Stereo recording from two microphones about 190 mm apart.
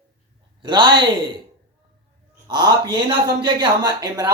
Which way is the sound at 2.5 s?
20° right (ahead or behind).